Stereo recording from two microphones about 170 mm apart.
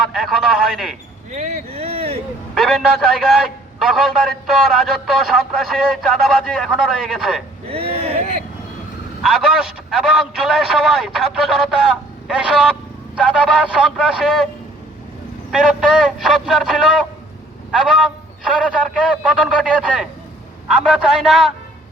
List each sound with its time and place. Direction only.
0.1 s a sound: centre (ahead or behind)
1.3 s a sound: 45° right (ahead or behind)
2.6 s a man's voice: centre (ahead or behind)
7.7 s vehicle: 35° right (ahead or behind)
9.2 s a man's voice: 5° right (ahead or behind)
15.5 s a man's voice: 5° right (ahead or behind)
19.3 s a man's voice: 5° right (ahead or behind)